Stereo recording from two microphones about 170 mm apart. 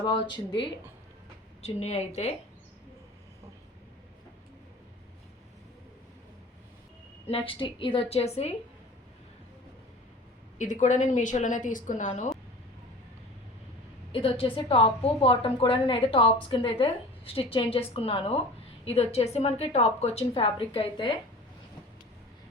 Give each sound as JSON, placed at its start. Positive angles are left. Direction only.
{"t": 0.0, "sound": "speech", "side_deg": 30}
{"t": 1.6, "sound": "a woman's voice", "side_deg": 40}
{"t": 7.3, "sound": "a woman's voice", "side_deg": 35}
{"t": 10.6, "sound": "a woman's voice", "side_deg": 45}
{"t": 14.1, "sound": "a woman's voice", "side_deg": 30}